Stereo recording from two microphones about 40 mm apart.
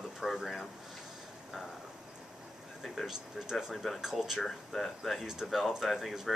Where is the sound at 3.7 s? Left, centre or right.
Centre.